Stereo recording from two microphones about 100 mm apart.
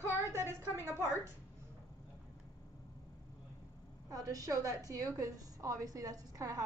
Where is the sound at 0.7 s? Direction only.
25° right (ahead or behind).